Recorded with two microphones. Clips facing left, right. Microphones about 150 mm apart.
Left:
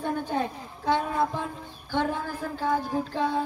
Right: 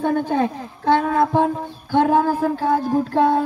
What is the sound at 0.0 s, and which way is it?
A woman's voice, 90° right.